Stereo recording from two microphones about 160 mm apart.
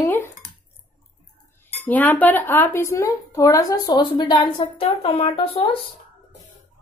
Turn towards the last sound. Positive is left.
turn(degrees=35)  # may be behind; listen again after turning